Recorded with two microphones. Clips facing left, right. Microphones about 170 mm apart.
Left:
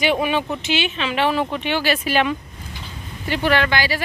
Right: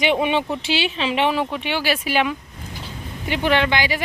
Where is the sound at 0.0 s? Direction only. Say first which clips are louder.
Even; 20° right (ahead or behind).